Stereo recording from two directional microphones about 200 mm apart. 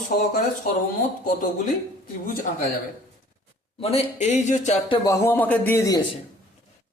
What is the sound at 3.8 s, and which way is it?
Speech, 30° left (ahead or behind).